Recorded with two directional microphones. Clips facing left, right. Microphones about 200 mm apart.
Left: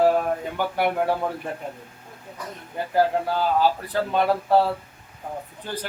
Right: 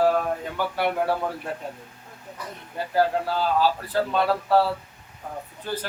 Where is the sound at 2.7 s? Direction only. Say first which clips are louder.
Left 1 dB; 15° left (ahead or behind).